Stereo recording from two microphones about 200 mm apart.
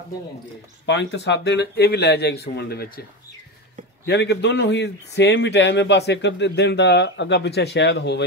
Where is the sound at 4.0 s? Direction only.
55° left (ahead or behind).